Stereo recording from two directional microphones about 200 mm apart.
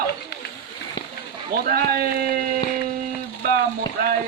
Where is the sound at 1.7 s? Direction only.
50° right (ahead or behind).